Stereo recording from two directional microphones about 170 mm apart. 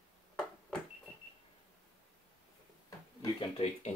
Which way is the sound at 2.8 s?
25° left (ahead or behind).